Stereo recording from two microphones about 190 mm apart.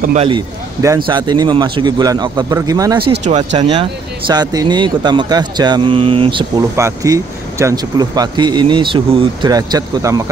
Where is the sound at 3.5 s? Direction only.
25° right (ahead or behind).